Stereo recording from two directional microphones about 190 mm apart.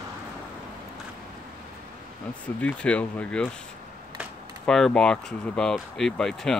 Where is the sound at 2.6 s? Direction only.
5° left (ahead or behind).